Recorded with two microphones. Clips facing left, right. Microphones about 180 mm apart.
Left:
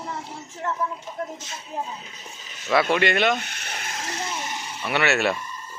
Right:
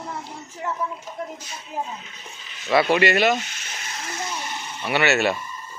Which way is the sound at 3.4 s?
60° left (ahead or behind).